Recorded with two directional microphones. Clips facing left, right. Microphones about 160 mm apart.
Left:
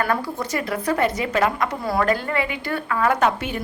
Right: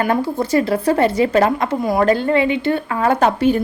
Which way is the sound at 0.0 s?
25° right (ahead or behind).